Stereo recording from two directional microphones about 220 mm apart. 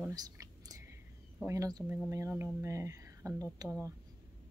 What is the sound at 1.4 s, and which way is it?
Speech, 15° right (ahead or behind).